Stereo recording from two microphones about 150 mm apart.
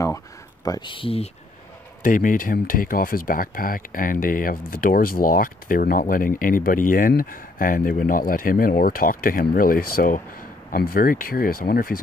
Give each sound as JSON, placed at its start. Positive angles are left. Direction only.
{"t": 0.7, "sound": "speech", "side_deg": 30}
{"t": 2.0, "sound": "speech", "side_deg": 60}